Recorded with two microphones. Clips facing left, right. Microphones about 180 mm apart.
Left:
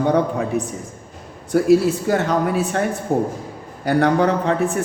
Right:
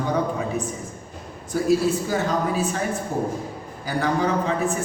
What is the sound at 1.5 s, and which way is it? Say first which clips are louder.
A woman's voice: left 5 dB; 65° left (ahead or behind).